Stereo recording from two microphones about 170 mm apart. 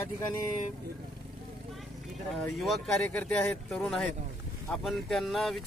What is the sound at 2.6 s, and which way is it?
Speech, centre (ahead or behind).